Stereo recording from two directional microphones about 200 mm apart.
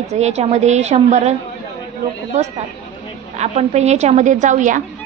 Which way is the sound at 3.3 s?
35° right (ahead or behind).